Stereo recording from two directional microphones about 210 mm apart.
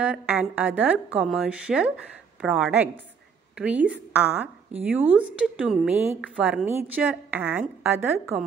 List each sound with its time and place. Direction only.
0.0 s a woman's voice: 5° right (ahead or behind)